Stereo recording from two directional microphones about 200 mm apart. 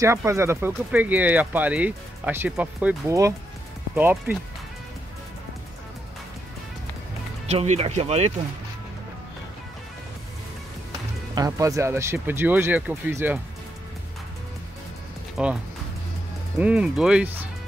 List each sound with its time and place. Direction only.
0.0 s speech: 15° right (ahead or behind)
7.4 s speech: 35° right (ahead or behind)
11.3 s speech: 15° right (ahead or behind)
15.4 s speech: 5° right (ahead or behind)
16.5 s speech: 5° right (ahead or behind)